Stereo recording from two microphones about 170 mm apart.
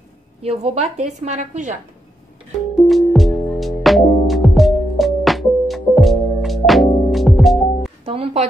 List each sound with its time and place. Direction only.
0.4 s a woman's voice: 35° right (ahead or behind)
2.9 s music: centre (ahead or behind)
8.0 s music: 35° right (ahead or behind)